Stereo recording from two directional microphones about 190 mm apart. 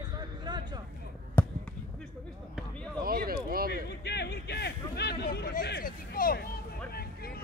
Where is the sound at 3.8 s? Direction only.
60° left (ahead or behind).